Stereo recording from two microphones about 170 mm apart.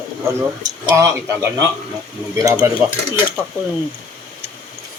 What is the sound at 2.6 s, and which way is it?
Speech, 15° right (ahead or behind).